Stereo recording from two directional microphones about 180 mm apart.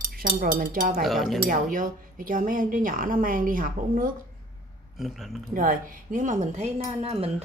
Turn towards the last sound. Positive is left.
turn(degrees=-35)  # may be behind; listen again after turning